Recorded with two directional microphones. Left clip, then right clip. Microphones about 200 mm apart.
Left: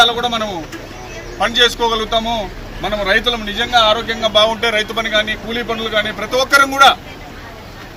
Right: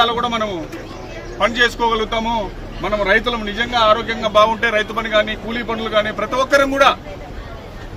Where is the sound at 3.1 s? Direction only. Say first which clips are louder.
Left 3 dB; 5° right (ahead or behind).